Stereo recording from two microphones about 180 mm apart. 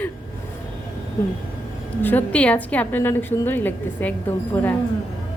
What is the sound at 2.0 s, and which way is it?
A woman's voice, 10° left (ahead or behind).